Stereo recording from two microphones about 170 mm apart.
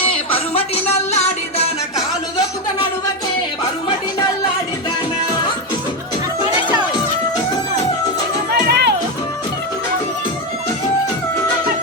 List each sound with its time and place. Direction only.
0.3 s music: 35° left (ahead or behind)
8.6 s music: 75° right (ahead or behind)